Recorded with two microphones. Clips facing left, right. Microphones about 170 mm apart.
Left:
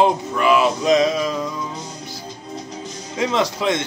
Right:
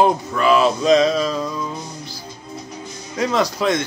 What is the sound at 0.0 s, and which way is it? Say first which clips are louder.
Music: right 1 dB; 15° left (ahead or behind).